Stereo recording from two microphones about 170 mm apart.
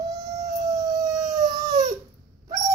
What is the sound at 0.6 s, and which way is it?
Siren, 20° right (ahead or behind).